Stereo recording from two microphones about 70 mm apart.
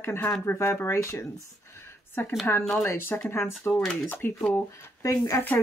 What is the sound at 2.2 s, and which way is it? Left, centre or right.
Speech, left.